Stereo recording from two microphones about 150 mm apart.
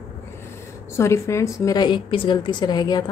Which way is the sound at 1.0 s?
20° left (ahead or behind).